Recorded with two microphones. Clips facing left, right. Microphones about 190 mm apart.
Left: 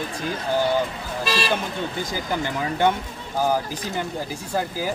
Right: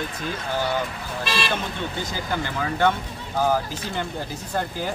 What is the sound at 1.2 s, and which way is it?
Speech, 35° left (ahead or behind).